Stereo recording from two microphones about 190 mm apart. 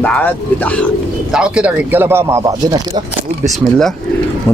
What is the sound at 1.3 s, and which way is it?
Speech, 5° right (ahead or behind).